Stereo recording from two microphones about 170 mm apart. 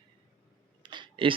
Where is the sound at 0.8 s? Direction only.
25° right (ahead or behind).